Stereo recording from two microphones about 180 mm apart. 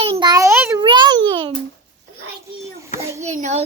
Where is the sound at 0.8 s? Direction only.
25° right (ahead or behind).